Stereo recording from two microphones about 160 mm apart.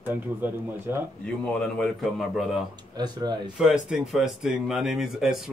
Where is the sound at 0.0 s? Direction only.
10° right (ahead or behind).